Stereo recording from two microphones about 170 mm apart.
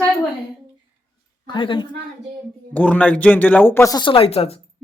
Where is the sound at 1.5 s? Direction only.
30° left (ahead or behind).